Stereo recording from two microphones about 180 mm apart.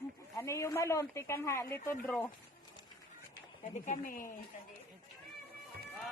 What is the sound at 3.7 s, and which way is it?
Speech, 45° left (ahead or behind).